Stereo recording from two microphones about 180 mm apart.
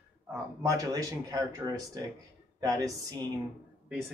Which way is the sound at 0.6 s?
20° right (ahead or behind).